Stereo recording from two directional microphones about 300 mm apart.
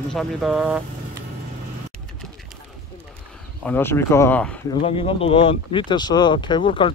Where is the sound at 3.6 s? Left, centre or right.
Centre.